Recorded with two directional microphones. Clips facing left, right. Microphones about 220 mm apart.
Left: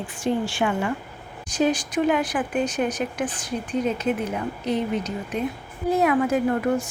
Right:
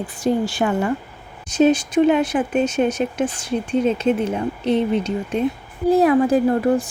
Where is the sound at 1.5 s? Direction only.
25° right (ahead or behind).